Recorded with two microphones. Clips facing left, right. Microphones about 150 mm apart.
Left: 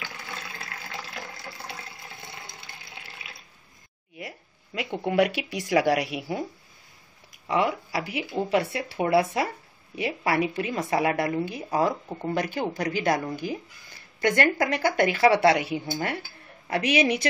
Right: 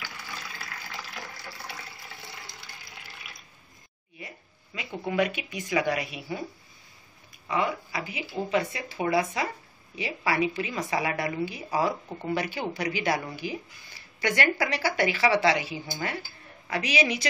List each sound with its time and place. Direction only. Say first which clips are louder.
0.2 s water: left 2 dB; 25° left (ahead or behind)
4.7 s speech: left 4 dB; 65° left (ahead or behind)
7.4 s speech: left 3 dB; 80° left; by 17.3 s 55° left (ahead or behind)